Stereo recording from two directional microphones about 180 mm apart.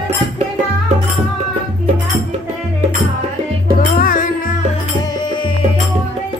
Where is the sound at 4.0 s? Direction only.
50° left (ahead or behind).